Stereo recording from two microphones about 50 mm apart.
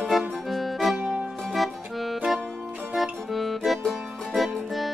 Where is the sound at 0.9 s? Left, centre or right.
Right.